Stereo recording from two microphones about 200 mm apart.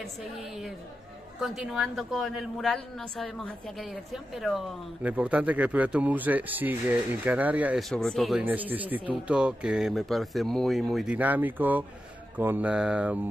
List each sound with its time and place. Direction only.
0.0 s a woman's voice: centre (ahead or behind)
7.9 s a woman's voice: 5° left (ahead or behind)